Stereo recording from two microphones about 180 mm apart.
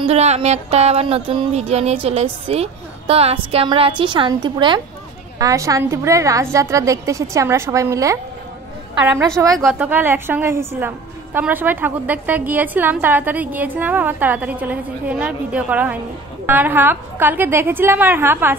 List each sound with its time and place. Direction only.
0.0 s a sound: 35° right (ahead or behind)
4.0 s a woman's voice: 25° right (ahead or behind)
9.7 s a woman's voice: 10° right (ahead or behind)